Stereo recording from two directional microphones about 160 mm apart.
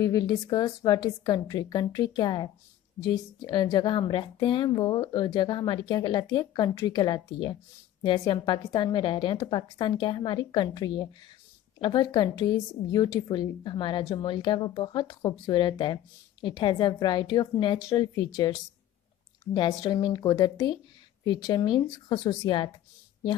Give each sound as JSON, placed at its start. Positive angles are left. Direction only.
{"t": 0.0, "sound": "a woman's voice", "side_deg": 25}